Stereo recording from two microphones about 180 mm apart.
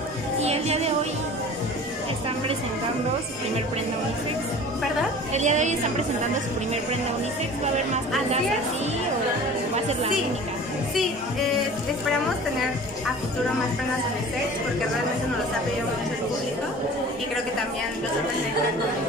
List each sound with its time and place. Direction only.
0.4 s music: 35° right (ahead or behind)
5.3 s a woman's voice: 40° right (ahead or behind)